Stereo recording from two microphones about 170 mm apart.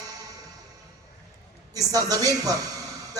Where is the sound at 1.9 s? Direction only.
20° right (ahead or behind).